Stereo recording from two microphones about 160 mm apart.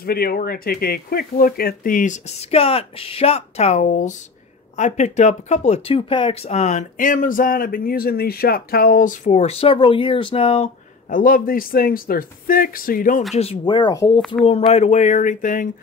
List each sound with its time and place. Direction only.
0.0 s speech: 70° left (ahead or behind); by 11.1 s 40° left (ahead or behind)
11.1 s speech: 60° left (ahead or behind)
13.4 s speech: 35° left (ahead or behind)
14.7 s speech: 45° left (ahead or behind)